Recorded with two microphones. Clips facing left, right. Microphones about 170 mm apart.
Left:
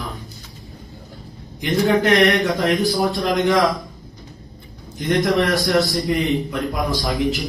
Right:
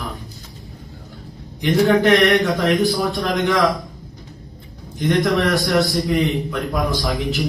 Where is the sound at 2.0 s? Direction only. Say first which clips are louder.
Right 1 dB; centre (ahead or behind).